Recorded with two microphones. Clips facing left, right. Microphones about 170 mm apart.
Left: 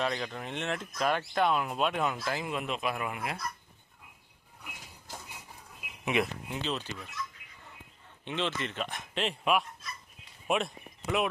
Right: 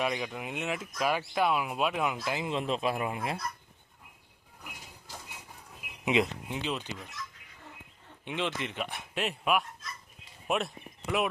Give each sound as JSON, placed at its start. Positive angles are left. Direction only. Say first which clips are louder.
{"t": 0.0, "sound": "speech", "louder": "right 1 dB", "side_deg": -10}
{"t": 2.2, "sound": "speech", "louder": "right 2 dB", "side_deg": -20}
{"t": 6.1, "sound": "speech", "louder": "right 2 dB", "side_deg": -20}
{"t": 8.2, "sound": "speech", "louder": "even", "side_deg": -10}